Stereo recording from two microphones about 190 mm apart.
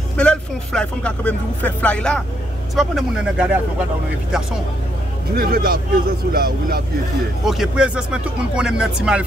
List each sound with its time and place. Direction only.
0.2 s speech: 5° left (ahead or behind)
5.3 s speech: 50° right (ahead or behind)
7.4 s speech: centre (ahead or behind)